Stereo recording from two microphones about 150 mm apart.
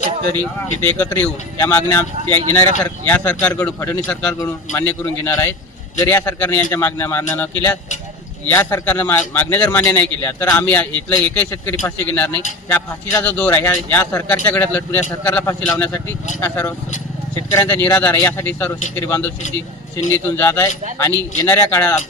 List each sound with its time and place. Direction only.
0.3 s a man's voice: 15° left (ahead or behind)
4.4 s a man's voice: 20° left (ahead or behind)